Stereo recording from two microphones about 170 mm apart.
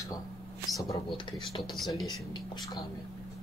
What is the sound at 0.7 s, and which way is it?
Speech, 25° left (ahead or behind).